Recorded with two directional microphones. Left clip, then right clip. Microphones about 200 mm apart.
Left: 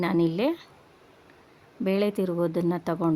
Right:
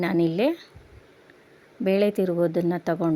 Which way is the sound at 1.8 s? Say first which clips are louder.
Right 4 dB; centre (ahead or behind).